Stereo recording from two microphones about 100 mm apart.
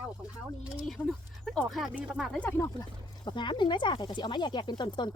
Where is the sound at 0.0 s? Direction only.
10° right (ahead or behind).